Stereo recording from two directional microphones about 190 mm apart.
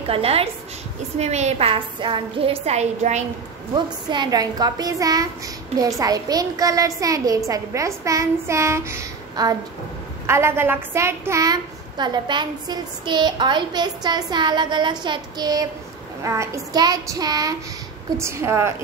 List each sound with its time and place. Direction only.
0.0 s a woman's voice: 30° right (ahead or behind)
3.7 s a woman's voice: 25° right (ahead or behind)